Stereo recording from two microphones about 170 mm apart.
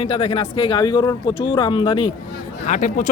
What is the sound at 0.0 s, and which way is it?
Speech, 30° left (ahead or behind).